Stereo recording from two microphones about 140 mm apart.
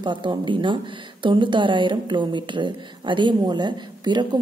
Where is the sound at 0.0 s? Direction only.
35° right (ahead or behind).